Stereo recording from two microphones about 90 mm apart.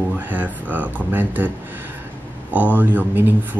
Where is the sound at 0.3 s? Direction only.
20° right (ahead or behind).